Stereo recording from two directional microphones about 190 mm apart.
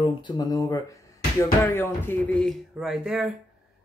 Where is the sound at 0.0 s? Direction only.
20° left (ahead or behind); by 3.3 s 5° right (ahead or behind).